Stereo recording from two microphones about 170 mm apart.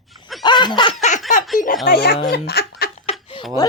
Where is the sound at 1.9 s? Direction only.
70° left (ahead or behind).